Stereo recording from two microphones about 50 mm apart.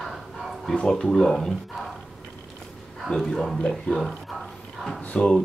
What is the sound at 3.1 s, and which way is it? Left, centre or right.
Speech, centre.